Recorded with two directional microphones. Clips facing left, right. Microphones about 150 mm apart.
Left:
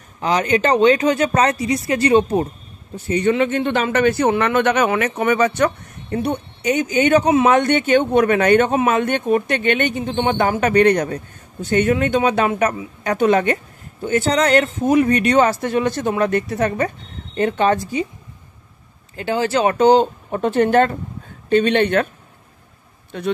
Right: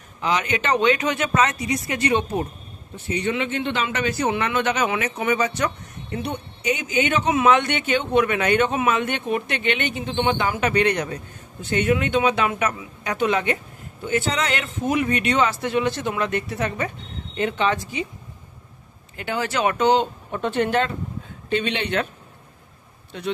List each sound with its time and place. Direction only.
0.2 s speech: 40° left (ahead or behind)
3.1 s a man's voice: 45° left (ahead or behind)
6.2 s speech: 45° left (ahead or behind)
19.1 s speech: 30° left (ahead or behind); by 22.0 s 50° left (ahead or behind)
23.1 s speech: 50° left (ahead or behind)